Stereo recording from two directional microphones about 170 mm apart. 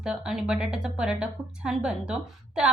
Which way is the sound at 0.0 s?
5° right (ahead or behind).